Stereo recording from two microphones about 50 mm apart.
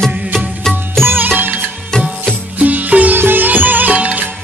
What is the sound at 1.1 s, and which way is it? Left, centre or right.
Music, right.